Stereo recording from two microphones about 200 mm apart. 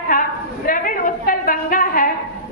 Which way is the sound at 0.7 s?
45° left (ahead or behind).